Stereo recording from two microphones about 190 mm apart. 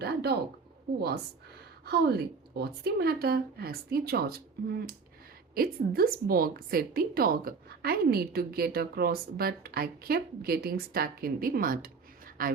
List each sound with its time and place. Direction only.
0.0 s speech: 60° right (ahead or behind)
1.8 s a woman's voice: 55° right (ahead or behind)
5.5 s a woman's voice: 50° right (ahead or behind)